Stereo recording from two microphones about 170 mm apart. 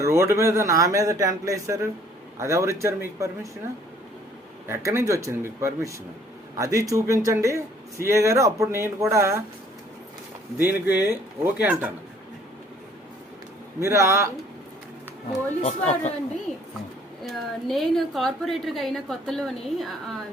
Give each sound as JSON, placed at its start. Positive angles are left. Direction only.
{"t": 0.0, "sound": "speech", "side_deg": -15}
{"t": 4.7, "sound": "speech", "side_deg": -15}
{"t": 10.7, "sound": "speech", "side_deg": -15}
{"t": 13.7, "sound": "speech", "side_deg": -15}
{"t": 15.6, "sound": "speech", "side_deg": 40}
{"t": 17.2, "sound": "a woman's voice", "side_deg": 0}